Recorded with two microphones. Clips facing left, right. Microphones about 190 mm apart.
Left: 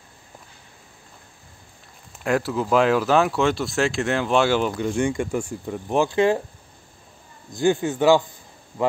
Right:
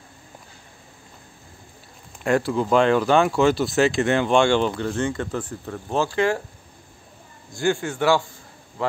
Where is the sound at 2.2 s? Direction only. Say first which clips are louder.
Right 2 dB; centre (ahead or behind); by 6.4 s 20° left (ahead or behind).